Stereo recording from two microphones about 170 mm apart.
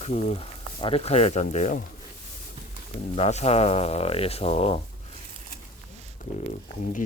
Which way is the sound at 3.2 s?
40° left (ahead or behind).